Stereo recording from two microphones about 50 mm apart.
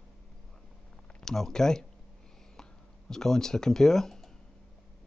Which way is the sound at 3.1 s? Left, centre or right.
Centre.